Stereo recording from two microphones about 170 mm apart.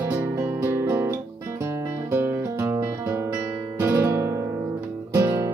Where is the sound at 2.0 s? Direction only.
15° right (ahead or behind).